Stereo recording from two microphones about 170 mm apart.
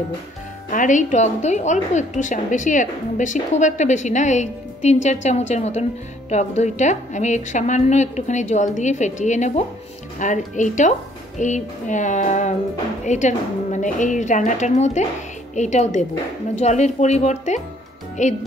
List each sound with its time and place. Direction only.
0.7 s a woman's voice: 50° left (ahead or behind)